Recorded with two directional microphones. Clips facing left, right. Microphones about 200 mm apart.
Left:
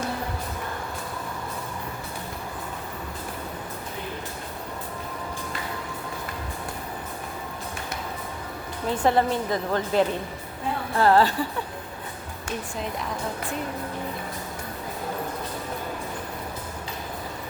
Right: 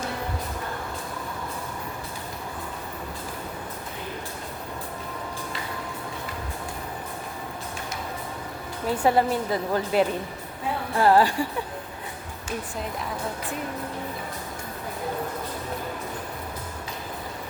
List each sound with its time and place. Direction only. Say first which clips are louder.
8.9 s a woman's voice: even; 10° right (ahead or behind)